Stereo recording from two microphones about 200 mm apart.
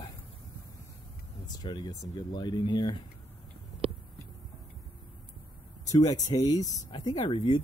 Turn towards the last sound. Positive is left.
turn(degrees=25)  # may be behind; listen again after turning